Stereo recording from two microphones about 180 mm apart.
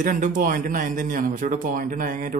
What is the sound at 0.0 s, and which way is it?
Speech, 45° right (ahead or behind).